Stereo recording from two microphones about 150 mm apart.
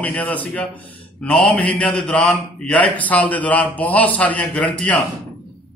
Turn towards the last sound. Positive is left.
turn(degrees=10)  # may be behind; listen again after turning